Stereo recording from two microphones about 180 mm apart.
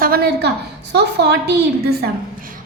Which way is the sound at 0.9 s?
70° right (ahead or behind).